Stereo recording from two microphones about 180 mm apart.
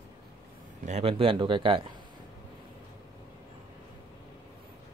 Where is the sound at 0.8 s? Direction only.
35° right (ahead or behind).